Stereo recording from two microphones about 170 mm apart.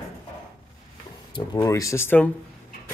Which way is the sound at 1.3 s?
20° left (ahead or behind).